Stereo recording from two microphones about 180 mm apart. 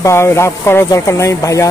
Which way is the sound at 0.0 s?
15° left (ahead or behind).